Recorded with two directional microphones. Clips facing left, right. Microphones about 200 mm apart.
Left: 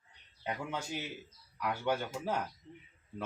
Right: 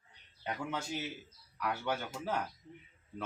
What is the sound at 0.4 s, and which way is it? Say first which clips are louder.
Speech: even; 15° left (ahead or behind).